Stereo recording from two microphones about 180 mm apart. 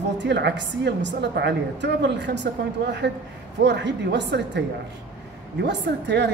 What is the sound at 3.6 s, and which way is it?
Speech, 75° right (ahead or behind).